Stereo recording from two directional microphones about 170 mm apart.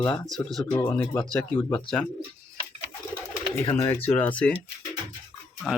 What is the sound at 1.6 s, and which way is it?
Speech, 10° left (ahead or behind).